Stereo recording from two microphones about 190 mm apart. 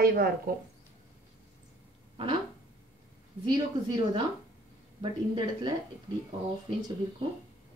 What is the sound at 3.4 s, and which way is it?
Speech, 25° right (ahead or behind).